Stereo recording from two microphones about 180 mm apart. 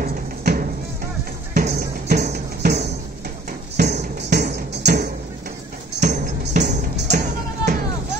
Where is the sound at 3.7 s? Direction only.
65° right (ahead or behind).